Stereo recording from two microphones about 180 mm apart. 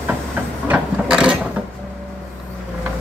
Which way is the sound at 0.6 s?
5° right (ahead or behind).